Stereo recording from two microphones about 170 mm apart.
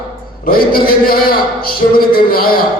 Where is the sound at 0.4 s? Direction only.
60° left (ahead or behind).